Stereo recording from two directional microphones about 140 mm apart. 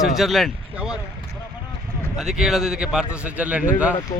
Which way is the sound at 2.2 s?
Centre (ahead or behind).